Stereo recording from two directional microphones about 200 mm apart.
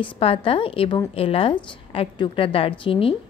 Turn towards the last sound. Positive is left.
turn(degrees=25)  # may be behind; listen again after turning